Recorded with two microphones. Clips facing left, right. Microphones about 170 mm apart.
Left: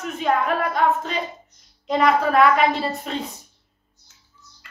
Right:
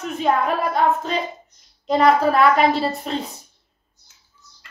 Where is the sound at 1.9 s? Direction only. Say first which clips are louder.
Right 3 dB; 35° right (ahead or behind).